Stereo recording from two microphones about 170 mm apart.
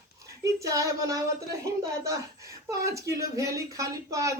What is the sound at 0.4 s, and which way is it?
Speech, 20° right (ahead or behind).